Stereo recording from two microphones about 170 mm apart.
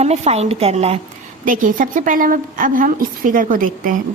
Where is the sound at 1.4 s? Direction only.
50° right (ahead or behind).